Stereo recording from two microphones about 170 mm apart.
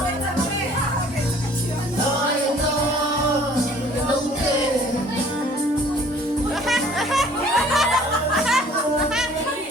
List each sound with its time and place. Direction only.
6.7 s music: centre (ahead or behind)